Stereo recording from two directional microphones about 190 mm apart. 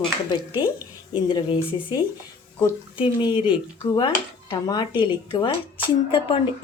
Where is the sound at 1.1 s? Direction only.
25° left (ahead or behind).